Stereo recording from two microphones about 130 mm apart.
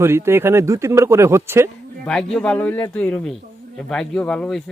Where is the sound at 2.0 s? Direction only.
5° left (ahead or behind).